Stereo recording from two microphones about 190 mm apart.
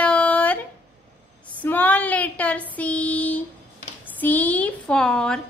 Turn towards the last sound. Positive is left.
turn(degrees=5)  # may be behind; listen again after turning